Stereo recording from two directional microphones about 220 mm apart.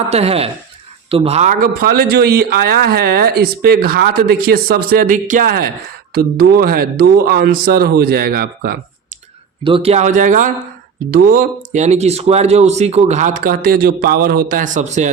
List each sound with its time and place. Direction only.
0.1 s a man's voice: 25° right (ahead or behind); by 8.8 s 40° right (ahead or behind)
9.6 s speech: 25° right (ahead or behind)